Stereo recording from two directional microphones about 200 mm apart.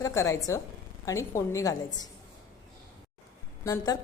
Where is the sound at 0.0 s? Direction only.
15° left (ahead or behind).